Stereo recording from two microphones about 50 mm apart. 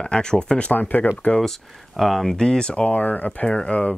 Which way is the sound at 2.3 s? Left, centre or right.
Centre.